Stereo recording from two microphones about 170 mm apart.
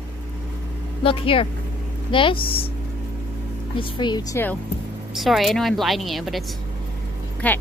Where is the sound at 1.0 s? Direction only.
30° left (ahead or behind).